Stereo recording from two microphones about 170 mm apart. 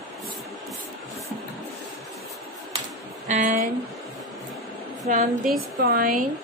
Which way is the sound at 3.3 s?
50° right (ahead or behind).